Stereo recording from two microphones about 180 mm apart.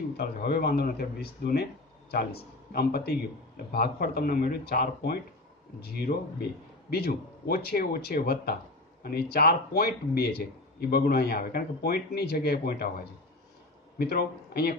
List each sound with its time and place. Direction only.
0.2 s a man's voice: 60° left (ahead or behind)
6.1 s a man's voice: 50° left (ahead or behind)